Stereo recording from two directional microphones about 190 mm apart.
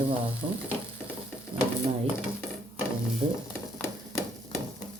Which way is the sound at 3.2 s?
30° right (ahead or behind).